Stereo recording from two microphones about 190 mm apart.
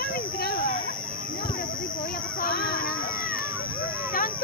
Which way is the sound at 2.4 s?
55° left (ahead or behind).